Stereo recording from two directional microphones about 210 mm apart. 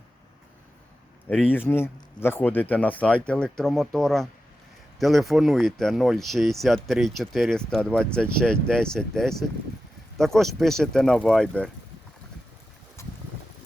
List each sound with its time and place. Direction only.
1.3 s speech: 10° left (ahead or behind)